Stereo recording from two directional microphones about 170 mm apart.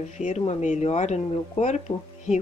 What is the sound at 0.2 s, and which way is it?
Speech, 45° left (ahead or behind).